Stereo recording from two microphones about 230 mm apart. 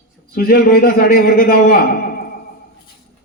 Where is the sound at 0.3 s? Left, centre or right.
Left.